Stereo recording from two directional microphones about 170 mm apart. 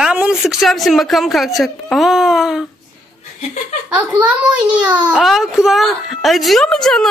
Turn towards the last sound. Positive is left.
turn(degrees=5)  # may be behind; listen again after turning